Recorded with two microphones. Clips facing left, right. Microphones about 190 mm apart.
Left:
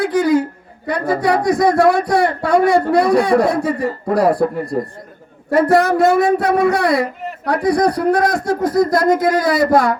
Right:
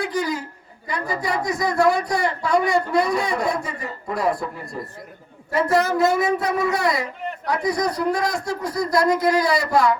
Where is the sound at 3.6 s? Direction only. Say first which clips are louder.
Left 12 dB; 35° left (ahead or behind).